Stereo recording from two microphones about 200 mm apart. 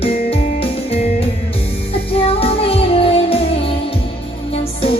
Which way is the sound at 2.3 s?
30° left (ahead or behind).